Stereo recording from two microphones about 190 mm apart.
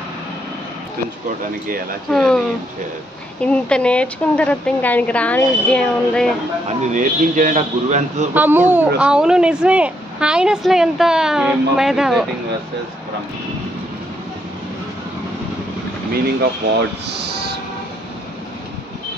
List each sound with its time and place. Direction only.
2.0 s speech: centre (ahead or behind)
3.4 s a woman's voice: 5° left (ahead or behind)
6.8 s a man's voice: 40° right (ahead or behind)
8.4 s speech: 10° right (ahead or behind)